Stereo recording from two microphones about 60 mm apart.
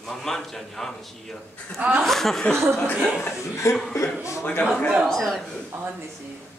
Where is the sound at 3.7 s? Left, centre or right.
Left.